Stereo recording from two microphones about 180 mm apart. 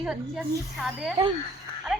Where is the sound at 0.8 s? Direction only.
Centre (ahead or behind).